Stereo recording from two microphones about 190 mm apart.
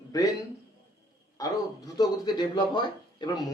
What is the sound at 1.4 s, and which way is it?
Speech, 20° left (ahead or behind).